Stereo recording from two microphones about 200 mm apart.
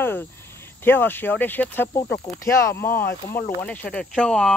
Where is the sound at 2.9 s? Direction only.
50° left (ahead or behind).